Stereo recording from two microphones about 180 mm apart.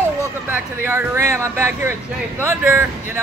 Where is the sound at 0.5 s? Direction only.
10° right (ahead or behind).